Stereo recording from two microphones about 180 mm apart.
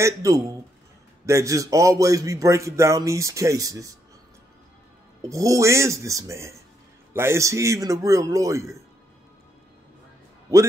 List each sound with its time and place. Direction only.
0.0 s a man's voice: 20° right (ahead or behind)
5.3 s a man's voice: 15° right (ahead or behind)